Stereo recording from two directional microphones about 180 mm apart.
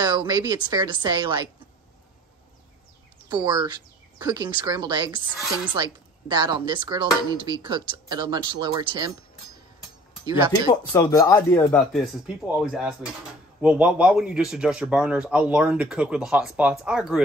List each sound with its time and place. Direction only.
0.0 s speech: 25° right (ahead or behind)
3.3 s speech: 25° right (ahead or behind)
10.2 s speech: 25° right (ahead or behind)
10.7 s speech: 25° left (ahead or behind)
11.3 s speech: 10° left (ahead or behind)
12.3 s speech: 5° right (ahead or behind)